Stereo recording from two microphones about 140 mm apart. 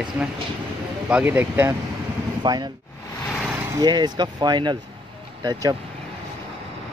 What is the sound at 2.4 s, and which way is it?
Speech, 30° right (ahead or behind).